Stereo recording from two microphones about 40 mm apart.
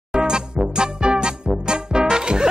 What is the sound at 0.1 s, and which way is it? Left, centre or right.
Music, centre.